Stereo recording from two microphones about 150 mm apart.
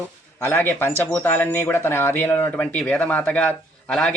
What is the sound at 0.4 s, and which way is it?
Speech, 15° left (ahead or behind).